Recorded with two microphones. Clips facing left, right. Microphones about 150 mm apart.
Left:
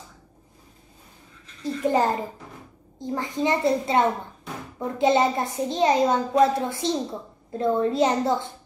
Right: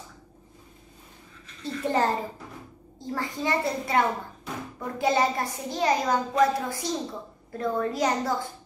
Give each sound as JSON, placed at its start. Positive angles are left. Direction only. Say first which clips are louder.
{"t": 1.6, "sound": "a child's voice", "louder": "left 3 dB", "side_deg": 15}